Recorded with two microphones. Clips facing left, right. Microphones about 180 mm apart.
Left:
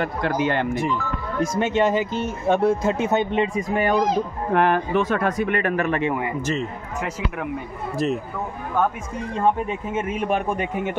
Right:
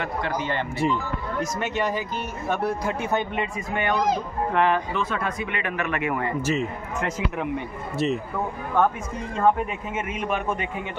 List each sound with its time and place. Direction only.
0.4 s speech: 60° left (ahead or behind)
0.7 s speech: 25° right (ahead or behind)
1.4 s speech: 25° left (ahead or behind)
4.6 s speech: 55° left (ahead or behind); by 6.1 s 30° left (ahead or behind)
6.4 s a man's voice: 5° right (ahead or behind)
9.7 s speech: 30° left (ahead or behind)